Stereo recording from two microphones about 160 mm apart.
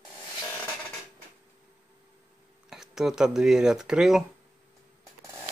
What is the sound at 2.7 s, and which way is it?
Speech, centre (ahead or behind).